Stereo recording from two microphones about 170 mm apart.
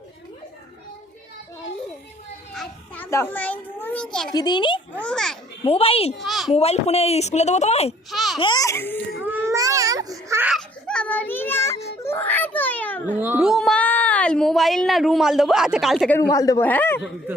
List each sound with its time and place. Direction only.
2.6 s children playing: 10° left (ahead or behind)
4.4 s speech: 25° left (ahead or behind)
4.9 s a child's voice: 5° left (ahead or behind)
5.6 s a woman's voice: 35° left (ahead or behind)
6.1 s a sound: centre (ahead or behind)
6.5 s a woman's voice: 40° left (ahead or behind)
8.1 s baby laughter: centre (ahead or behind)
8.4 s a child's voice: 25° left (ahead or behind)
9.2 s baby cry: 10° right (ahead or behind)
10.5 s baby cry: 5° left (ahead or behind)
12.0 s a sound: 15° left (ahead or behind)
13.1 s speech: 10° right (ahead or behind)
16.2 s speech: 20° left (ahead or behind)